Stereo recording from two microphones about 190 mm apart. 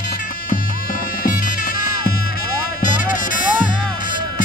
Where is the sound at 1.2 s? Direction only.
45° left (ahead or behind).